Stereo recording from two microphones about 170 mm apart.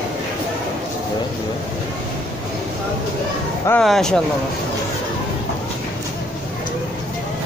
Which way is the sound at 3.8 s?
Centre (ahead or behind).